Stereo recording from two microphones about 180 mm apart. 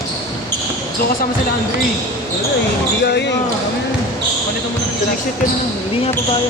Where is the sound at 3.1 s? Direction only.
70° left (ahead or behind).